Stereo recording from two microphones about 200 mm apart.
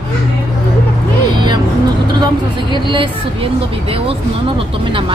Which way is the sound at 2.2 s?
25° right (ahead or behind).